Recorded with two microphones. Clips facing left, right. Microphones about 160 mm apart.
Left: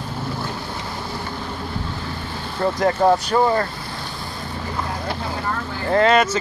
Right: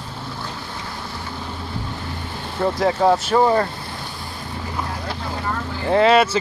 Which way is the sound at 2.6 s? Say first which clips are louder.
Even; 5° right (ahead or behind).